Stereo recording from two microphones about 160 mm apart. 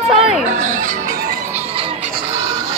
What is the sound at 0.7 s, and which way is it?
Music, 50° right (ahead or behind).